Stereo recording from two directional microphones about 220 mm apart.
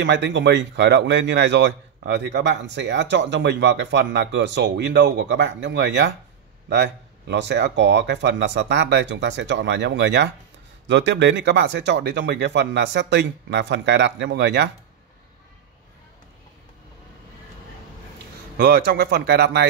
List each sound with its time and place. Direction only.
0.0 s a man's voice: 55° right (ahead or behind)
18.6 s a man's voice: 45° right (ahead or behind)